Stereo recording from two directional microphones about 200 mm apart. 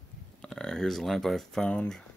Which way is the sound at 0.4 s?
5° left (ahead or behind).